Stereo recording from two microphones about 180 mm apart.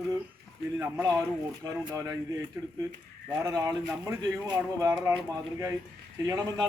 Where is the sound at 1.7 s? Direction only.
15° right (ahead or behind).